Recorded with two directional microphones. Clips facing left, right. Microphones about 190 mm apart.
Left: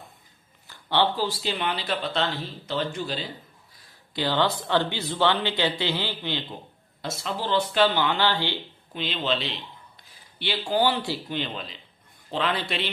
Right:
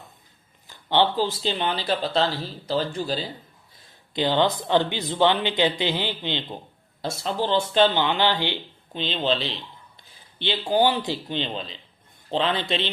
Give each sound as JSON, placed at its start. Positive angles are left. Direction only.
{"t": 0.7, "sound": "speech", "side_deg": -15}
{"t": 3.8, "sound": "speech", "side_deg": -20}
{"t": 7.0, "sound": "speech", "side_deg": -30}
{"t": 10.4, "sound": "speech", "side_deg": -20}